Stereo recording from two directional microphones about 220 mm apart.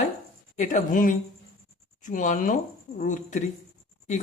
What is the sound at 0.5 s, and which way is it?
Speech, 35° left (ahead or behind).